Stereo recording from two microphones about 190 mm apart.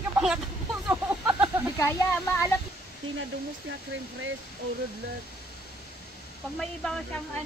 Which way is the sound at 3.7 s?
90° right.